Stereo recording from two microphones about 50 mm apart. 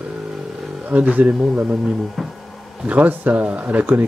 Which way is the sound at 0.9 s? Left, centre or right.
Right.